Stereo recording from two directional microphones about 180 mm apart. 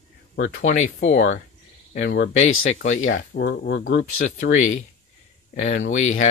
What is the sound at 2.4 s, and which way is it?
Speech, 40° left (ahead or behind).